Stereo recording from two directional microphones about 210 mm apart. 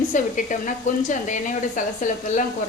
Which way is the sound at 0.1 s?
35° left (ahead or behind).